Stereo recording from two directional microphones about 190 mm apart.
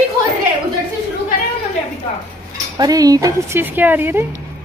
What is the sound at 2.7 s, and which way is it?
Speech, 20° right (ahead or behind).